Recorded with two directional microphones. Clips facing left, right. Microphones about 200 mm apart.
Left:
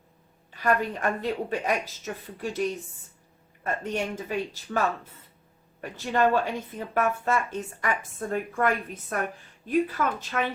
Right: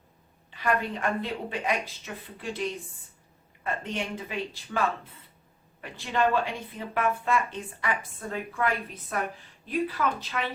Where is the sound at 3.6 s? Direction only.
45° left (ahead or behind).